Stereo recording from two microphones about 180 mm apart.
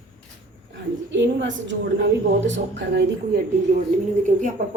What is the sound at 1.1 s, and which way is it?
A woman's voice, 90° right.